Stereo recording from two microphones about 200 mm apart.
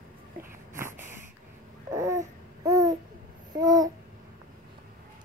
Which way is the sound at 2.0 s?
15° right (ahead or behind).